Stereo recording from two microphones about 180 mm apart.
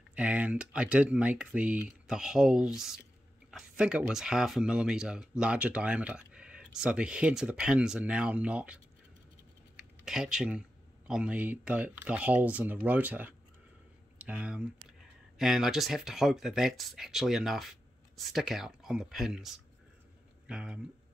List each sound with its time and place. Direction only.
0.1 s speech: 5° right (ahead or behind)
10.0 s speech: 5° right (ahead or behind)